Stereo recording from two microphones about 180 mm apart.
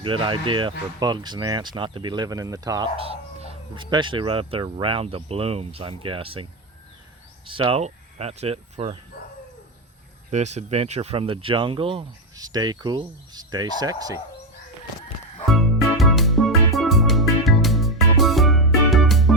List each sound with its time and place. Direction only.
0.0 s speech: 25° right (ahead or behind)
3.0 s speech: 30° right (ahead or behind)
10.3 s speech: 40° right (ahead or behind); by 14.2 s 20° right (ahead or behind)
15.4 s music: centre (ahead or behind)